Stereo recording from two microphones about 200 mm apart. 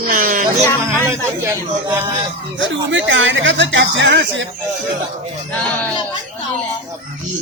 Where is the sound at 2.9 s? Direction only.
70° right (ahead or behind).